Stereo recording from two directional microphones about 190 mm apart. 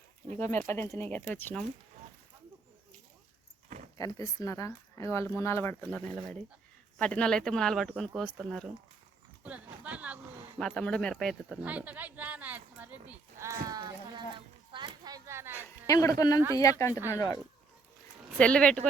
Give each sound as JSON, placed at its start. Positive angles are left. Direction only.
{"t": 0.3, "sound": "speech", "side_deg": 10}
{"t": 3.9, "sound": "speech", "side_deg": 20}
{"t": 7.0, "sound": "speech", "side_deg": 5}
{"t": 9.4, "sound": "a sound", "side_deg": -5}
{"t": 15.5, "sound": "a sound", "side_deg": 15}
{"t": 16.6, "sound": "speech", "side_deg": 15}
{"t": 18.3, "sound": "speech", "side_deg": 5}